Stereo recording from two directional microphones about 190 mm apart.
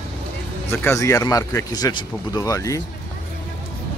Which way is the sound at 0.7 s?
15° left (ahead or behind).